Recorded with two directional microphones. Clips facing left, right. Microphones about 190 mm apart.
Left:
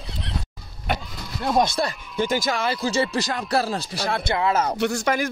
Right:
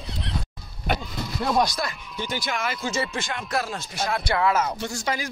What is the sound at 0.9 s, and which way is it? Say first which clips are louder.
Vehicle: even; centre (ahead or behind).